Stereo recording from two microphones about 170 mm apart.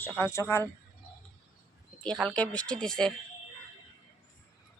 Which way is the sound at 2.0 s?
5° left (ahead or behind).